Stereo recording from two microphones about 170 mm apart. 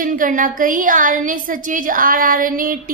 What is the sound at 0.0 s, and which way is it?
A woman's voice, 55° right (ahead or behind).